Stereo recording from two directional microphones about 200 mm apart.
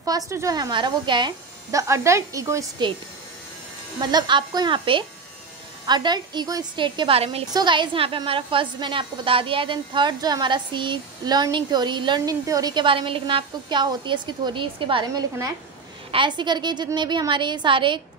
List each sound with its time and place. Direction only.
0.0 s speech: 15° right (ahead or behind)
4.0 s a woman's voice: 20° right (ahead or behind)